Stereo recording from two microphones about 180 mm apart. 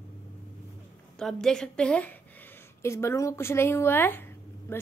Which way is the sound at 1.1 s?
5° left (ahead or behind).